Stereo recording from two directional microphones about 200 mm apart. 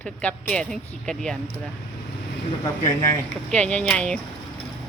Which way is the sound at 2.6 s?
15° left (ahead or behind).